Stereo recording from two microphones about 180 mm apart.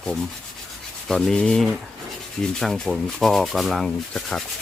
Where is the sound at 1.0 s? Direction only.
5° left (ahead or behind).